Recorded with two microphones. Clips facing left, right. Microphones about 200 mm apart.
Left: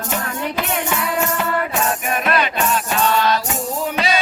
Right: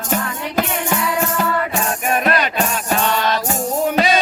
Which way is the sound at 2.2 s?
45° right (ahead or behind).